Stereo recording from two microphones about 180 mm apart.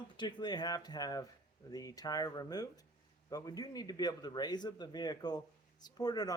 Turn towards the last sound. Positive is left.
turn(degrees=20)  # may be behind; listen again after turning